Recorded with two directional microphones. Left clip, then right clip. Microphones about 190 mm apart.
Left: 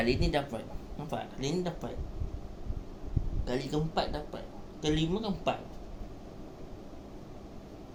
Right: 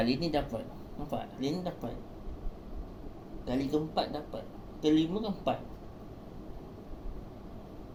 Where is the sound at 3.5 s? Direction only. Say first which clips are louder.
Right 2 dB; 50° left (ahead or behind).